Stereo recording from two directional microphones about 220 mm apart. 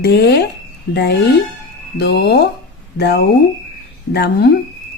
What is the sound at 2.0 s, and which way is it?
A woman's voice, 50° left (ahead or behind).